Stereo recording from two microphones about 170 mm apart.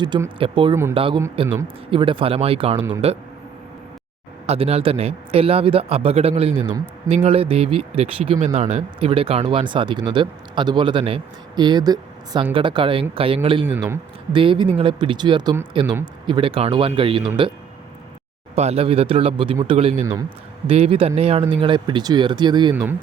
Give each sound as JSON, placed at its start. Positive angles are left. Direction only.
{"t": 0.0, "sound": "a man's voice", "side_deg": -25}
{"t": 4.4, "sound": "a man's voice", "side_deg": -35}
{"t": 18.5, "sound": "a man's voice", "side_deg": -40}
{"t": 22.7, "sound": "speech", "side_deg": -10}